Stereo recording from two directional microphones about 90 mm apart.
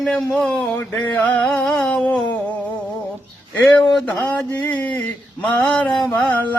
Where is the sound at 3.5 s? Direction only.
15° left (ahead or behind).